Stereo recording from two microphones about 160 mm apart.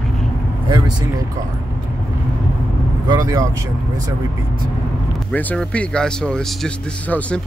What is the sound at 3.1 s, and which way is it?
Speech, 20° right (ahead or behind).